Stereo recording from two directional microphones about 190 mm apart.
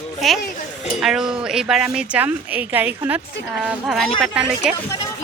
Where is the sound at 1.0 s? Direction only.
Centre (ahead or behind).